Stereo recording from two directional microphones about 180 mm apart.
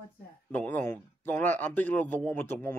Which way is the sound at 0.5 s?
10° left (ahead or behind).